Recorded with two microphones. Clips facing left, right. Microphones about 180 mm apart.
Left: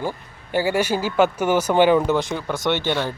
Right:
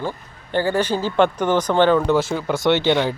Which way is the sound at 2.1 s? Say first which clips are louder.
Right 3 dB; 5° right (ahead or behind).